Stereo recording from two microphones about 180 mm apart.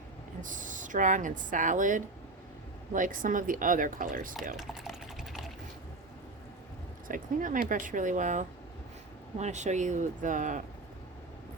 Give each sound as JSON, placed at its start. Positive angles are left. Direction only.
{"t": 0.4, "sound": "speech", "side_deg": -45}
{"t": 4.5, "sound": "typing", "side_deg": 0}
{"t": 7.1, "sound": "speech", "side_deg": -50}